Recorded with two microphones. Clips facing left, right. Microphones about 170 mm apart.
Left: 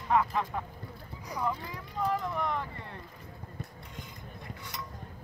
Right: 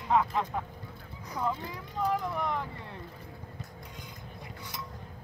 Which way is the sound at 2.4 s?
15° right (ahead or behind).